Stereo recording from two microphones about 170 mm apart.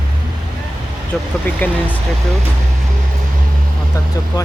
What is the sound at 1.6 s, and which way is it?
Speech, 10° left (ahead or behind).